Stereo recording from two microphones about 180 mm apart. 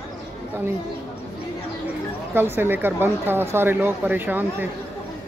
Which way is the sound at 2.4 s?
10° right (ahead or behind).